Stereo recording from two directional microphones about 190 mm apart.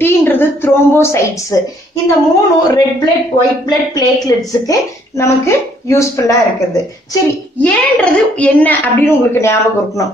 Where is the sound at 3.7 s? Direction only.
20° left (ahead or behind).